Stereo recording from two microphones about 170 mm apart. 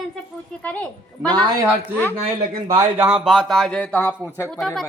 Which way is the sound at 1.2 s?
25° right (ahead or behind).